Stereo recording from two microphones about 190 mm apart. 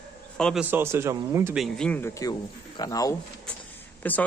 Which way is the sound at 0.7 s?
10° right (ahead or behind).